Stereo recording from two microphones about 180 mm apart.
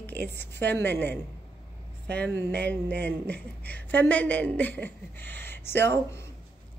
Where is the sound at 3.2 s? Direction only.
10° left (ahead or behind).